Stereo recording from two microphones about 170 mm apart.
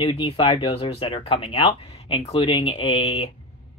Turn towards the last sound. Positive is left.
turn(degrees=35)  # may be behind; listen again after turning